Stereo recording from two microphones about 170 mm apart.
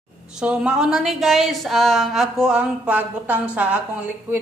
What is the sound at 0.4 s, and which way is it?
A woman's voice, 5° right (ahead or behind).